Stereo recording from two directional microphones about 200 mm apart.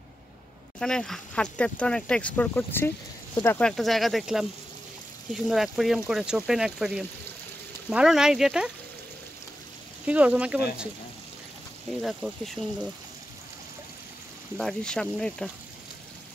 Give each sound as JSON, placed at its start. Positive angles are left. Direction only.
{"t": 0.7, "sound": "speech", "side_deg": 5}
{"t": 10.0, "sound": "speech", "side_deg": -5}
{"t": 12.0, "sound": "speech", "side_deg": 0}
{"t": 14.6, "sound": "speech", "side_deg": 5}